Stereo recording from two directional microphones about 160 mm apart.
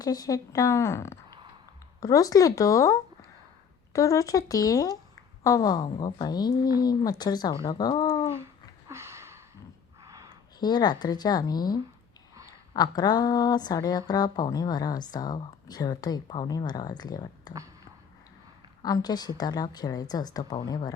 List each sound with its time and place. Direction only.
0.0 s speech: 25° left (ahead or behind)
8.9 s a sound: 15° right (ahead or behind)
10.6 s speech: 25° left (ahead or behind)
18.8 s speech: 25° left (ahead or behind)